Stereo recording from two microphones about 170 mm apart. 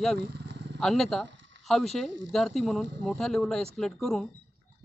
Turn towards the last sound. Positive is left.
turn(degrees=5)  # may be behind; listen again after turning